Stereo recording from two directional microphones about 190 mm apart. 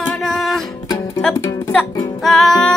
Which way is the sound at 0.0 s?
5° left (ahead or behind).